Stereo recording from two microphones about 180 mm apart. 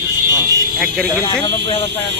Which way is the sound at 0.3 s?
20° right (ahead or behind).